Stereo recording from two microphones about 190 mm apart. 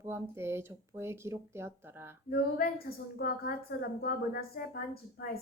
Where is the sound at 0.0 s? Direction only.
15° right (ahead or behind).